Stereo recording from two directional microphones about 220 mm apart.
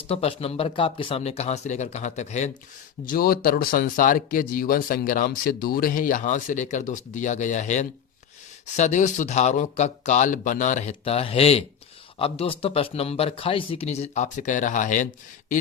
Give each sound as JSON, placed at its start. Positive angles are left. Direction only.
{"t": 0.1, "sound": "speech", "side_deg": 25}